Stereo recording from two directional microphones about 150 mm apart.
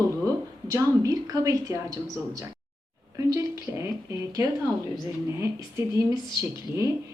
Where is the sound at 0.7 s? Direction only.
20° right (ahead or behind).